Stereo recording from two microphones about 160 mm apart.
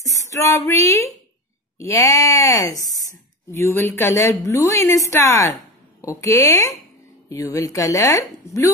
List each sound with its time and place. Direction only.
0.0 s a woman's voice: 20° left (ahead or behind)